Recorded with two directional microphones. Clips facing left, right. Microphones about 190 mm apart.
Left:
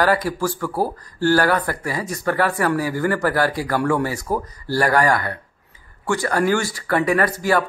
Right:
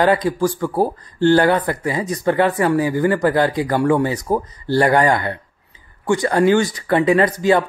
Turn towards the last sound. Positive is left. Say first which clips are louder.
# right 4 dB
turn(degrees=-20)  # may be behind; listen again after turning